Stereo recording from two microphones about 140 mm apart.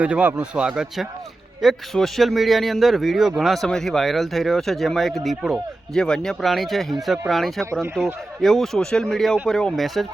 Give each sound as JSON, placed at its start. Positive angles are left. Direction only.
{"t": 0.0, "sound": "speech", "side_deg": -10}